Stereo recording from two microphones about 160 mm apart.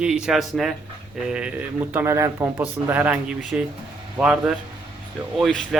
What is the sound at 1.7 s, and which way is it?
Speech, 15° right (ahead or behind).